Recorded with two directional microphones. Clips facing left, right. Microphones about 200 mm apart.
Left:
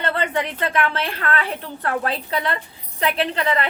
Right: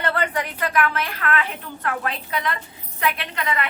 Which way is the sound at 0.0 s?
25° left (ahead or behind).